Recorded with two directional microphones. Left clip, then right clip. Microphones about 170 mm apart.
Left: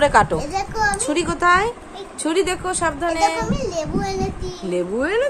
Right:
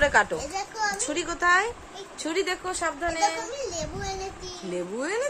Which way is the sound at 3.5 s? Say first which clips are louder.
Left 8 dB; 35° left (ahead or behind).